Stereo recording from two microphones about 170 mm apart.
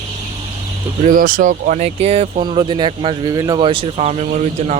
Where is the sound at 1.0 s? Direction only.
55° right (ahead or behind).